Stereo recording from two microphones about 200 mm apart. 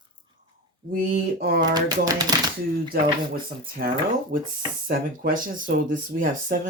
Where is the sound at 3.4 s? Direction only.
45° right (ahead or behind).